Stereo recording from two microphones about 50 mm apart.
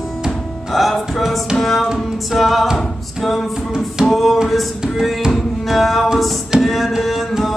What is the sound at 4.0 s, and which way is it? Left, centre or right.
Music, centre.